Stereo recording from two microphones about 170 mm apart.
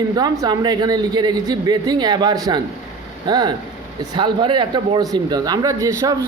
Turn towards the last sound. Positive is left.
turn(degrees=-20)  # may be behind; listen again after turning